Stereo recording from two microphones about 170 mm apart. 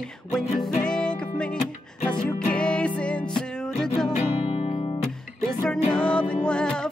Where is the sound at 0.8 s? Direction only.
5° left (ahead or behind).